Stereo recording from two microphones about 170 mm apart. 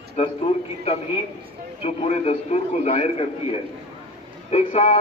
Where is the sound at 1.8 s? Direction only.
35° left (ahead or behind).